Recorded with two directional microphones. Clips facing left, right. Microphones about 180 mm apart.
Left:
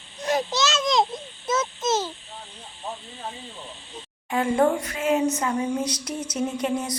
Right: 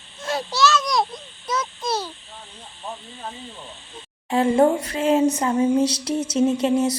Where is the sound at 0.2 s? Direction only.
20° left (ahead or behind).